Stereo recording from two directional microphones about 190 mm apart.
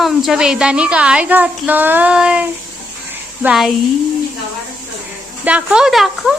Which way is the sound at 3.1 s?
5° right (ahead or behind).